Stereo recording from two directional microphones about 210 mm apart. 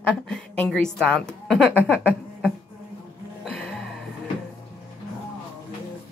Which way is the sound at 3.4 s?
5° left (ahead or behind).